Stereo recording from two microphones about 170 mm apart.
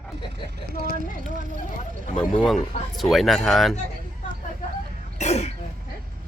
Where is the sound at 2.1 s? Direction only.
5° left (ahead or behind).